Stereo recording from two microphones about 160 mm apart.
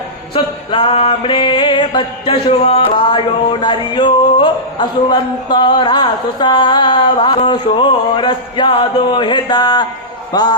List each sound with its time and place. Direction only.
0.3 s music: 30° left (ahead or behind)
10.3 s a man's voice: 25° left (ahead or behind)